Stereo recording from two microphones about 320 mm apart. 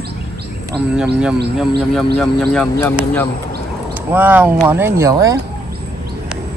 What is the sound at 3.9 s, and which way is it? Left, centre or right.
Speech, centre.